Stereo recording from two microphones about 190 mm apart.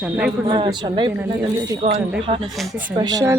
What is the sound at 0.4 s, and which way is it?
Speech, 25° right (ahead or behind).